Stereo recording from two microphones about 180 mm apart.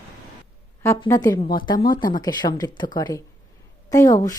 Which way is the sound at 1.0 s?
15° left (ahead or behind).